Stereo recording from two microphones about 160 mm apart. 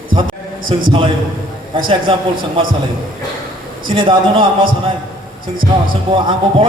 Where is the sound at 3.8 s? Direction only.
30° right (ahead or behind).